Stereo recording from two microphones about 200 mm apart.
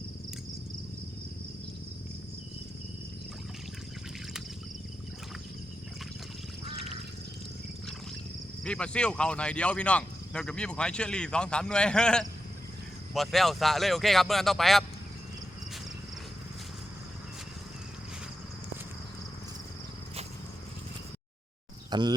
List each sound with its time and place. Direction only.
8.6 s speech: 5° left (ahead or behind)
21.8 s speech: 20° right (ahead or behind)